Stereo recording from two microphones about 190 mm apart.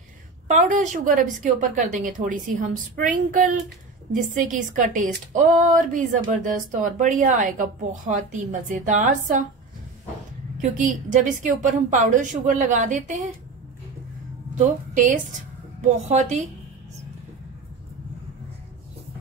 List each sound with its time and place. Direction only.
0.5 s speech: 40° right (ahead or behind)
10.6 s a woman's voice: 45° right (ahead or behind)
14.6 s a woman's voice: 40° right (ahead or behind)